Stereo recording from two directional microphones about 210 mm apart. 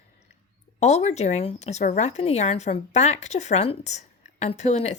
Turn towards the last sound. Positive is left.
turn(degrees=35)  # may be behind; listen again after turning